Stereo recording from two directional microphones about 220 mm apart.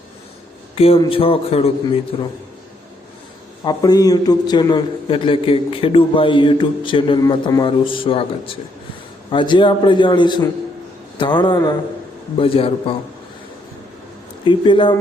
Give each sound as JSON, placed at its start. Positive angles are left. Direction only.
{"t": 0.8, "sound": "a man's voice", "side_deg": 25}
{"t": 3.6, "sound": "a man's voice", "side_deg": 20}
{"t": 14.4, "sound": "a man's voice", "side_deg": 20}